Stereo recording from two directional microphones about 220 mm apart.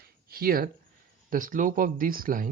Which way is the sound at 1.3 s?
40° right (ahead or behind).